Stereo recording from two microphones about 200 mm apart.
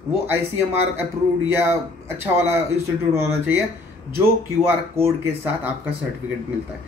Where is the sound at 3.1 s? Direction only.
15° right (ahead or behind).